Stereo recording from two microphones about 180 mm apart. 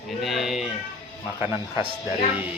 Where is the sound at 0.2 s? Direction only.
Centre (ahead or behind).